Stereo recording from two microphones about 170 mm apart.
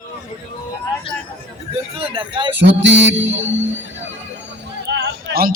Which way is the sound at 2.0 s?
30° right (ahead or behind).